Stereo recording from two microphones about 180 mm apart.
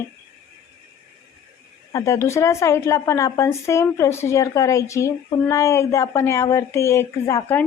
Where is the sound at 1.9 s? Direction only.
15° left (ahead or behind).